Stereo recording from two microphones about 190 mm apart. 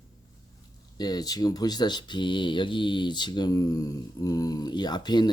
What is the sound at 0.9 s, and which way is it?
Speech, 20° left (ahead or behind).